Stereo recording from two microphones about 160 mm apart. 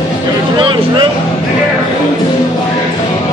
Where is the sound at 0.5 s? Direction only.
30° right (ahead or behind).